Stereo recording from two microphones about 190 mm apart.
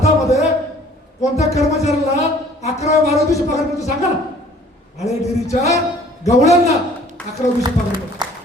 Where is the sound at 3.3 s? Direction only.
15° left (ahead or behind).